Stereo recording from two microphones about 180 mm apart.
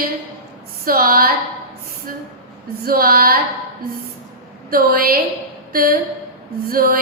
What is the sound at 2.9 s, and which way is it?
Speech, 55° right (ahead or behind).